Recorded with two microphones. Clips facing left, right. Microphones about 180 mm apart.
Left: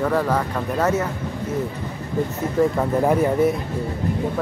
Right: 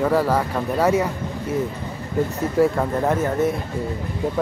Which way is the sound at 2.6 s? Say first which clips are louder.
Right 1 dB; 10° right (ahead or behind).